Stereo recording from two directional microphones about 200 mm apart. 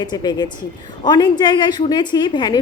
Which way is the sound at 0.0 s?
20° left (ahead or behind).